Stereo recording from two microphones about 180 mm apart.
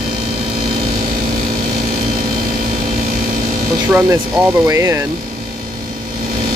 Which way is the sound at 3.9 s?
10° right (ahead or behind).